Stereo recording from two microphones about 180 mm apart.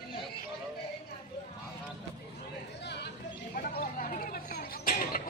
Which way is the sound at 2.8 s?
70° left (ahead or behind).